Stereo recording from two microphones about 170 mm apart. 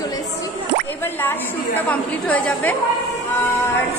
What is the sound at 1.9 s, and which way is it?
Speech, 5° left (ahead or behind).